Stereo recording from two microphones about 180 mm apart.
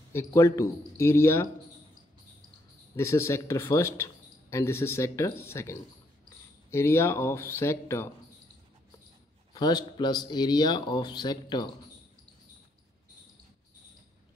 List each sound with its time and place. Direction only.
0.1 s speech: 15° left (ahead or behind)
3.0 s speech: 15° left (ahead or behind)
9.5 s speech: 20° left (ahead or behind)